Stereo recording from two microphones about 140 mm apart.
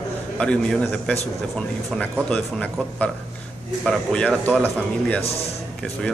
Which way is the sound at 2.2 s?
10° left (ahead or behind).